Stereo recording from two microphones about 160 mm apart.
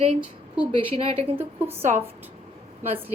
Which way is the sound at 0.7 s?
35° right (ahead or behind).